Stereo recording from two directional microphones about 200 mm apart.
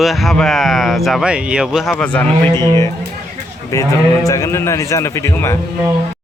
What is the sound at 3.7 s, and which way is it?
A man's voice, 15° left (ahead or behind).